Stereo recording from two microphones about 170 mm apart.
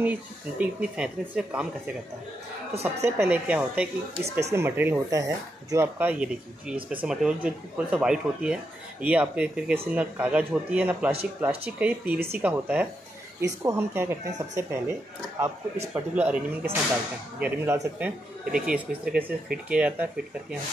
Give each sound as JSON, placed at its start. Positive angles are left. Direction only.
{"t": 0.0, "sound": "speech", "side_deg": -10}
{"t": 3.0, "sound": "speech", "side_deg": -10}
{"t": 19.1, "sound": "speech", "side_deg": -5}